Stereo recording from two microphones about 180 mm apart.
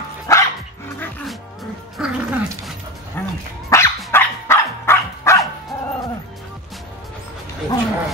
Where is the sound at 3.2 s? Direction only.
10° left (ahead or behind).